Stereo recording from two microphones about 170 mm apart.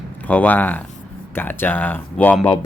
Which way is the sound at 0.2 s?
10° left (ahead or behind).